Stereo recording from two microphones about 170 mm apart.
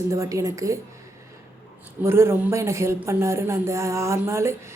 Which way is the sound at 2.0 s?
15° right (ahead or behind).